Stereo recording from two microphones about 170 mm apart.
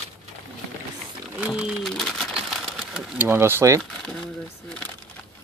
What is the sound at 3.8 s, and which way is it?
Crumpling, centre (ahead or behind).